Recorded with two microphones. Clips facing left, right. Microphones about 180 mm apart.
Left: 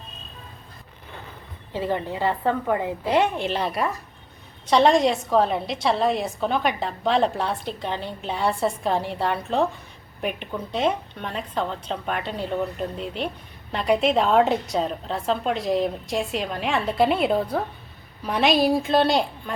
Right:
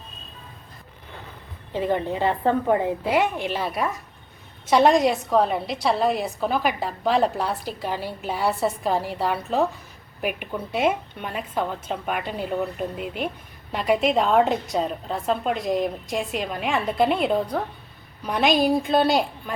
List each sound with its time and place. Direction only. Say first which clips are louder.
1.7 s a woman's voice: right 2 dB; 20° right (ahead or behind)
3.3 s a woman's voice: left 1 dB; 10° right (ahead or behind)